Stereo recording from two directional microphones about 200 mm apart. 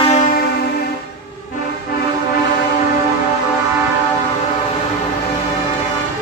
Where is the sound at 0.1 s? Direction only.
40° left (ahead or behind).